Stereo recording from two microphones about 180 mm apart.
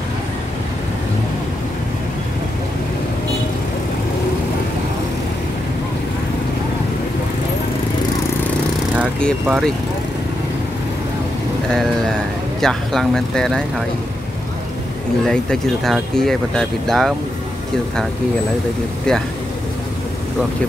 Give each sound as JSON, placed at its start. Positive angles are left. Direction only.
{"t": 9.2, "sound": "speech", "side_deg": 5}
{"t": 11.7, "sound": "speech", "side_deg": 5}
{"t": 15.2, "sound": "speech", "side_deg": 5}